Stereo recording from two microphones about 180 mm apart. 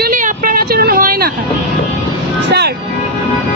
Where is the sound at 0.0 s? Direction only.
50° right (ahead or behind).